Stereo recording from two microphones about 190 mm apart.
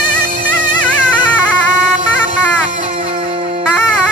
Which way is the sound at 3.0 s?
25° right (ahead or behind).